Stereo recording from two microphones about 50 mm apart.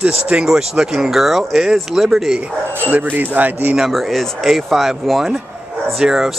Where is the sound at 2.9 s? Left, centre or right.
Right.